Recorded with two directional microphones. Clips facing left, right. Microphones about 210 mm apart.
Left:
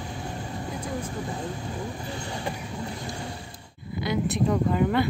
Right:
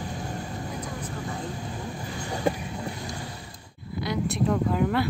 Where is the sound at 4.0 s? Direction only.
Centre (ahead or behind).